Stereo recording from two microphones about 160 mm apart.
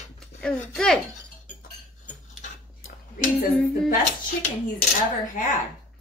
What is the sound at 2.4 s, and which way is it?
Cutlery, 50° left (ahead or behind).